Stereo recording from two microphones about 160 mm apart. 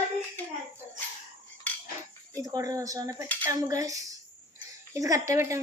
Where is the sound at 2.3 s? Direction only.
20° right (ahead or behind).